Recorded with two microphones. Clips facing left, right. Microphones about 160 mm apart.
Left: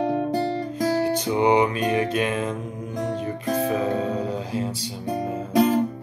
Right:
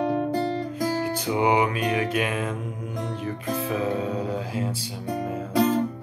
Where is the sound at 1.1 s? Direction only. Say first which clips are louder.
Left 2 dB; 10° right (ahead or behind).